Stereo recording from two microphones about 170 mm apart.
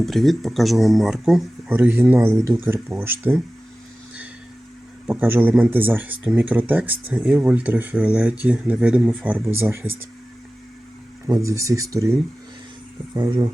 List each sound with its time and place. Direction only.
0.0 s speech: centre (ahead or behind)
1.7 s speech: 15° right (ahead or behind)
5.0 s speech: 10° right (ahead or behind)
11.3 s speech: 20° right (ahead or behind)